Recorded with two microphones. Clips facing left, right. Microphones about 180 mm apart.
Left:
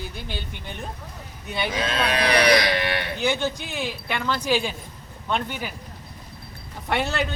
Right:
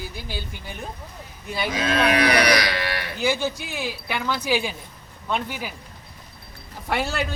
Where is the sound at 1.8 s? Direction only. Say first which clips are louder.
Right 5 dB; 30° left (ahead or behind).